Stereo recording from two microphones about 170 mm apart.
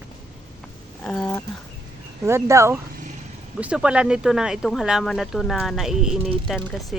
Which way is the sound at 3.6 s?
5° right (ahead or behind).